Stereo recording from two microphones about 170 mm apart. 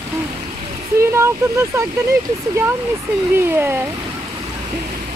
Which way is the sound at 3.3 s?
15° right (ahead or behind).